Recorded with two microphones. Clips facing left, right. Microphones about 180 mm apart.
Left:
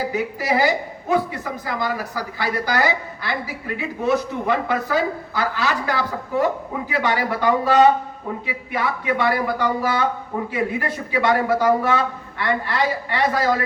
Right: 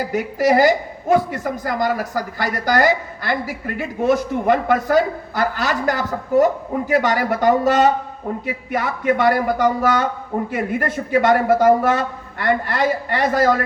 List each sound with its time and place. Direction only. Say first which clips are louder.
0.1 s a man's voice: right 5 dB; 45° right (ahead or behind)